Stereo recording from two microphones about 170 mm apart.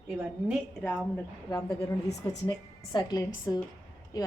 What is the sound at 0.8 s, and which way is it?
A woman's voice, 10° left (ahead or behind).